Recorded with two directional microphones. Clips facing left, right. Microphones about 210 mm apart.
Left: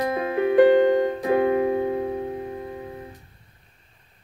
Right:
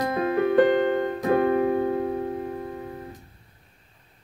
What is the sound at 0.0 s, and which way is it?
Music, 20° left (ahead or behind).